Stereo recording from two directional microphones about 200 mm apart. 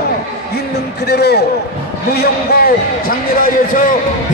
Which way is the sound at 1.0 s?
55° left (ahead or behind).